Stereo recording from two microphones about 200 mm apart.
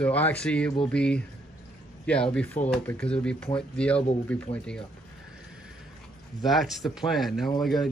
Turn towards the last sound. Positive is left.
turn(degrees=0)  # may be behind; listen again after turning